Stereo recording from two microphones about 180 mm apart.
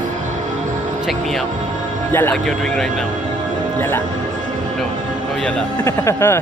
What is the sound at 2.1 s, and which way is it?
Speech, 10° left (ahead or behind).